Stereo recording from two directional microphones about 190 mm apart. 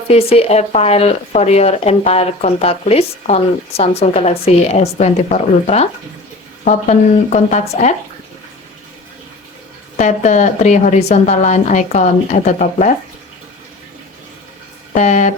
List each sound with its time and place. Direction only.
0.1 s speech: 30° left (ahead or behind)
10.0 s speech: 40° left (ahead or behind)
14.9 s speech: 40° left (ahead or behind)